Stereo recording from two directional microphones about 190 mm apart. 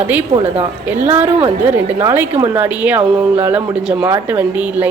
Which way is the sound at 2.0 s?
15° right (ahead or behind).